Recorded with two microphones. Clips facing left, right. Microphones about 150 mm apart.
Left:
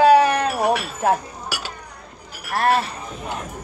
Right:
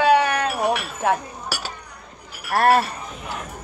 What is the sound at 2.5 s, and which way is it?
Speech, 45° right (ahead or behind).